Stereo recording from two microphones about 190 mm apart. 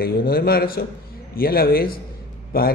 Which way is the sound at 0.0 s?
55° left (ahead or behind).